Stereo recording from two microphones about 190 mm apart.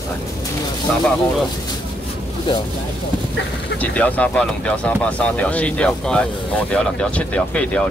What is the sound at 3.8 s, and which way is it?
Speech, 10° left (ahead or behind).